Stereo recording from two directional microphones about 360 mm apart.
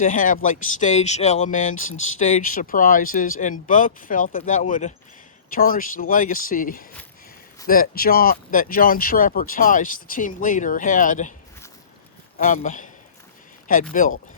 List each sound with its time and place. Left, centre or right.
0.0 s speech: left
12.4 s speech: left
14.0 s speech: left